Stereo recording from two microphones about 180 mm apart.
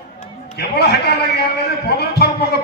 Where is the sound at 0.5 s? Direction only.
65° left (ahead or behind).